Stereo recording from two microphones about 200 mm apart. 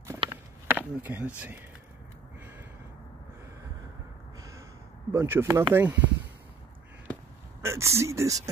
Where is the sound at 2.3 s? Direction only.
10° right (ahead or behind).